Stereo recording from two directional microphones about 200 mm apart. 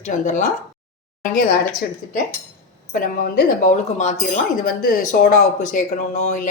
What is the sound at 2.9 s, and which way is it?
Speech, 45° left (ahead or behind).